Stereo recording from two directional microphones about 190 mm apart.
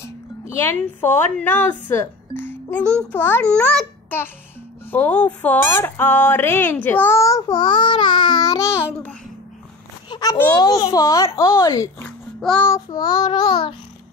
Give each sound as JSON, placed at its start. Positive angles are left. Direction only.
{"t": 0.6, "sound": "speech", "side_deg": 10}
{"t": 2.8, "sound": "a child's voice", "side_deg": -15}
{"t": 3.1, "sound": "speech", "side_deg": 10}
{"t": 10.0, "sound": "a sound", "side_deg": 25}
{"t": 10.3, "sound": "child singing", "side_deg": 20}
{"t": 11.3, "sound": "speech", "side_deg": 15}
{"t": 12.4, "sound": "child singing", "side_deg": 5}
{"t": 12.6, "sound": "child singing", "side_deg": 20}